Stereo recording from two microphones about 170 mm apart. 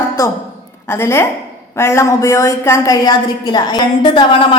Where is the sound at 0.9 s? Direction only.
15° left (ahead or behind).